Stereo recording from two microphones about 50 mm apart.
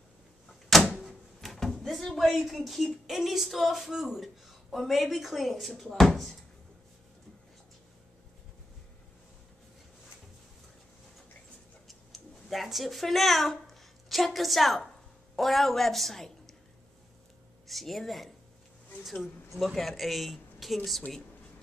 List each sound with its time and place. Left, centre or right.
0.5 s door: centre
1.0 s a sound: centre
2.9 s speech: centre
11.9 s a sound: centre
14.0 s a woman's voice: centre
17.6 s speech: centre